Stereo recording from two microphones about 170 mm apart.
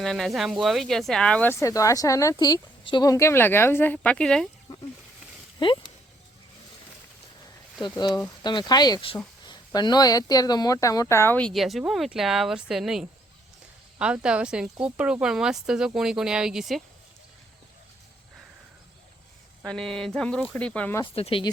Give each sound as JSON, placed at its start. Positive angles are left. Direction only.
{"t": 0.0, "sound": "speech", "side_deg": 0}
{"t": 5.5, "sound": "speech", "side_deg": 25}
{"t": 7.8, "sound": "speech", "side_deg": 25}
{"t": 19.6, "sound": "speech", "side_deg": 5}
{"t": 21.0, "sound": "speech", "side_deg": 35}